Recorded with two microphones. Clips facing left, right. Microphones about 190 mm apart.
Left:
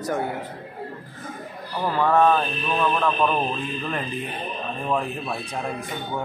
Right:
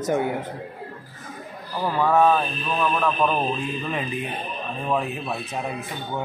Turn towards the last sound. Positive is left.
turn(degrees=-5)  # may be behind; listen again after turning